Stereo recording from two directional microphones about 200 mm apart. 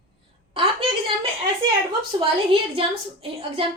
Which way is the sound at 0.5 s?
25° right (ahead or behind).